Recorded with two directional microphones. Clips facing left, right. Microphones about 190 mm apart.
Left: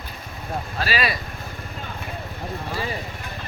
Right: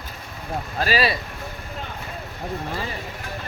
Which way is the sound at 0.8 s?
40° right (ahead or behind).